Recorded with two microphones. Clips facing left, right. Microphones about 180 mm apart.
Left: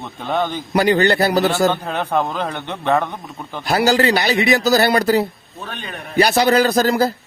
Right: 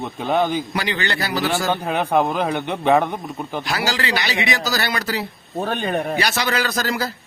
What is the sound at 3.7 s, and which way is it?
A man's voice, 40° left (ahead or behind).